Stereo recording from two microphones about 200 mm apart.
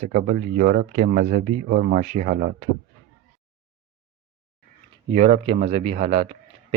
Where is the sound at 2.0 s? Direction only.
40° right (ahead or behind).